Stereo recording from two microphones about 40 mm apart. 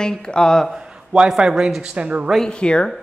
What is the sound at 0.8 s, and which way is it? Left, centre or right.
A man's voice, right.